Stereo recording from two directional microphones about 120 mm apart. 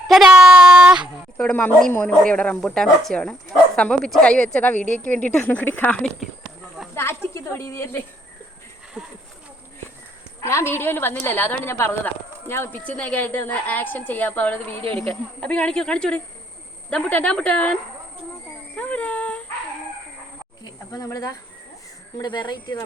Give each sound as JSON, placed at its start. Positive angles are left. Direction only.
{"t": 0.3, "sound": "a sound", "side_deg": -10}
{"t": 1.4, "sound": "a woman's voice", "side_deg": 10}
{"t": 6.9, "sound": "snake", "side_deg": 20}
{"t": 7.3, "sound": "speech", "side_deg": 20}
{"t": 10.4, "sound": "a woman's voice", "side_deg": 20}
{"t": 18.8, "sound": "speech", "side_deg": 10}
{"t": 20.9, "sound": "speech", "side_deg": 30}
{"t": 22.2, "sound": "speech", "side_deg": 40}